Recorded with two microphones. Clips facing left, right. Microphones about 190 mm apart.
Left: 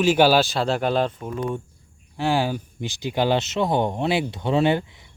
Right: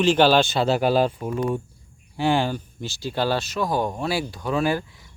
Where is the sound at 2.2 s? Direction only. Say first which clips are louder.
Right 1 dB; 5° left (ahead or behind); by 5.1 s 20° left (ahead or behind).